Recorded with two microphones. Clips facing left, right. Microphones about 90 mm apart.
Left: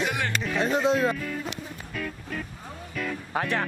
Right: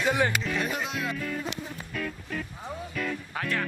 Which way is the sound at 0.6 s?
30° left (ahead or behind).